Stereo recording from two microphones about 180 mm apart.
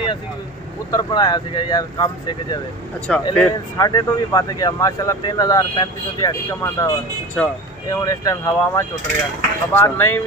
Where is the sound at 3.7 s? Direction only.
20° left (ahead or behind).